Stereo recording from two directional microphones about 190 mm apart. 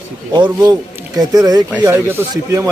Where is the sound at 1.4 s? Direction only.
20° right (ahead or behind).